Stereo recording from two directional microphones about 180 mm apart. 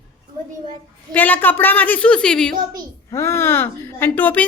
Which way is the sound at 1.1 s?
10° left (ahead or behind).